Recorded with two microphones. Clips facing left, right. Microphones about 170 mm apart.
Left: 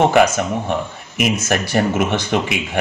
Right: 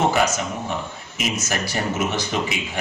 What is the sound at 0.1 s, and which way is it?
Speech, 60° left (ahead or behind).